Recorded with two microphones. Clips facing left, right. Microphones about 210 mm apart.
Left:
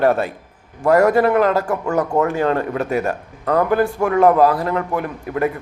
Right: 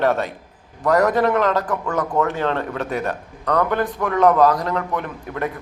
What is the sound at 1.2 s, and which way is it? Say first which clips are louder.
Speech: left 3 dB; 5° left (ahead or behind).